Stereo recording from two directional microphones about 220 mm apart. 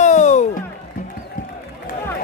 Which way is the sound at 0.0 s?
35° left (ahead or behind).